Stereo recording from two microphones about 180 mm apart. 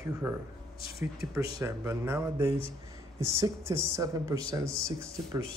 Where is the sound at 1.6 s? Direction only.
15° right (ahead or behind).